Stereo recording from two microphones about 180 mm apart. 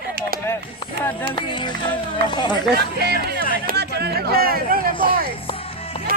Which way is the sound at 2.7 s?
65° right (ahead or behind).